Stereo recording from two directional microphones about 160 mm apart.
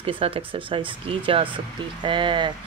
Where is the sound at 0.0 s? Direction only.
35° right (ahead or behind).